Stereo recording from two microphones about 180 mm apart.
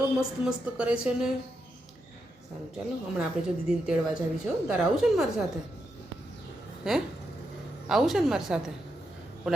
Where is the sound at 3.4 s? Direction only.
5° right (ahead or behind).